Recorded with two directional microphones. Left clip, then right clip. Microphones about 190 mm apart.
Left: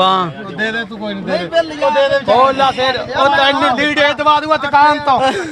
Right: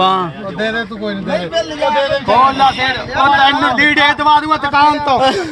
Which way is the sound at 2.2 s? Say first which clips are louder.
Right 1 dB; 55° left (ahead or behind).